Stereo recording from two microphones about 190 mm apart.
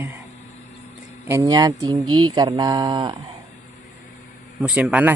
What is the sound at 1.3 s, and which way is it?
Speech, 15° right (ahead or behind).